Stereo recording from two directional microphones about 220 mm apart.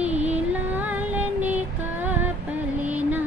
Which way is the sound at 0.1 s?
30° right (ahead or behind).